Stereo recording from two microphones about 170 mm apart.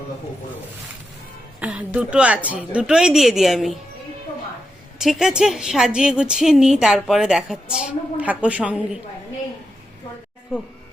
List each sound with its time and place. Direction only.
1.5 s a woman's voice: 10° right (ahead or behind)
4.9 s a woman's voice: centre (ahead or behind)